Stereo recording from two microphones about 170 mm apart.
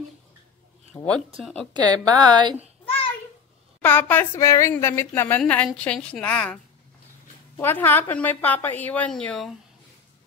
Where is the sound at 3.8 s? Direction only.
10° left (ahead or behind).